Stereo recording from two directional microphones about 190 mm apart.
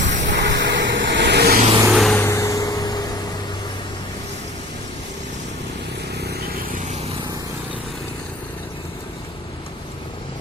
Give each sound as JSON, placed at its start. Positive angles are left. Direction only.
{"t": 0.1, "sound": "vehicle", "side_deg": -40}
{"t": 0.3, "sound": "vehicle", "side_deg": -70}
{"t": 1.9, "sound": "vehicle", "side_deg": 0}
{"t": 6.1, "sound": "vehicle", "side_deg": -55}